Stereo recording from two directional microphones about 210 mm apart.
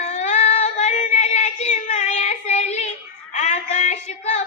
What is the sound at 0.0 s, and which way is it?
Child singing, 35° left (ahead or behind).